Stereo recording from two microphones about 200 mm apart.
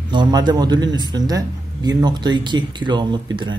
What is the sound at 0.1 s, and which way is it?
A man's voice, 20° right (ahead or behind).